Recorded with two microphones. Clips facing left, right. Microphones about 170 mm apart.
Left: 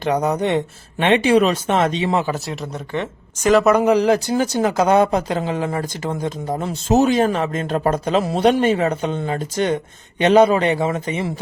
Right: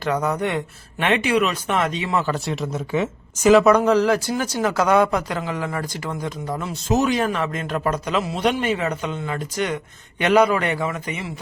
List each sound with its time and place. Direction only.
0.0 s speech: 20° left (ahead or behind)
2.2 s speech: centre (ahead or behind)
3.8 s speech: 15° left (ahead or behind)